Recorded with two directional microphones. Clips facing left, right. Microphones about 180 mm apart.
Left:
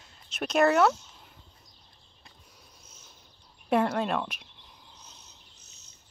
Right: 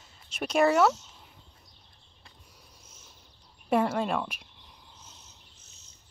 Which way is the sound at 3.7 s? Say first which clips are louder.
Even; 5° right (ahead or behind).